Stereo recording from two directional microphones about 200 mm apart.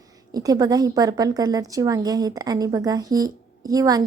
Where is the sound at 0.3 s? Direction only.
20° right (ahead or behind).